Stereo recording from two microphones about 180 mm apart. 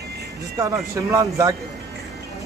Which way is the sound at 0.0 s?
65° right (ahead or behind).